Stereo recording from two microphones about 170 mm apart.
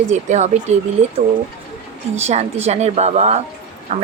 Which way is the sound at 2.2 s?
40° right (ahead or behind).